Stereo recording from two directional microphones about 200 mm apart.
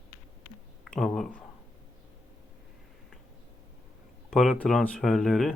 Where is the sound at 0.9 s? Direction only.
5° left (ahead or behind).